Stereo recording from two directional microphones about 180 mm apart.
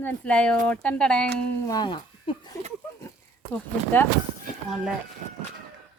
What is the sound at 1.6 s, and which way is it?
Speech, 20° left (ahead or behind).